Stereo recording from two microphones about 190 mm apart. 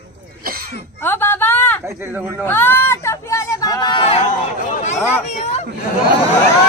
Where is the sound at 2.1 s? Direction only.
10° right (ahead or behind).